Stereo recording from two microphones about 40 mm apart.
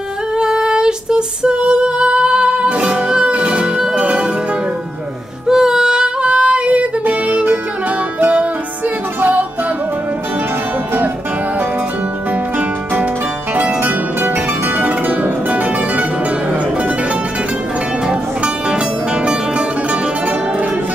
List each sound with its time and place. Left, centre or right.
0.4 s female singing: centre
3.3 s music: right
5.5 s female singing: centre
7.1 s music: right
13.6 s music: right